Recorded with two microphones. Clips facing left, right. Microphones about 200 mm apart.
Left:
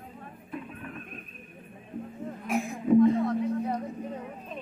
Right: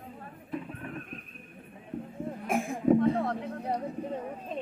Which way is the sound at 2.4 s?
50° right (ahead or behind).